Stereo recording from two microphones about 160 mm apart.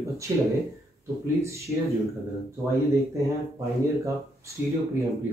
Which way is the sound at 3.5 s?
20° right (ahead or behind).